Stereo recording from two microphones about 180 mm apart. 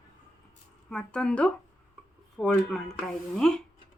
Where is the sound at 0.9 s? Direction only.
5° left (ahead or behind).